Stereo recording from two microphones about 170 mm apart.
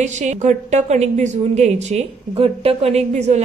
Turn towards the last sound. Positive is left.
turn(degrees=-40)  # may be behind; listen again after turning